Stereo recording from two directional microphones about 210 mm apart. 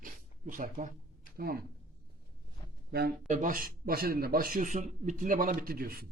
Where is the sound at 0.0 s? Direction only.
40° right (ahead or behind).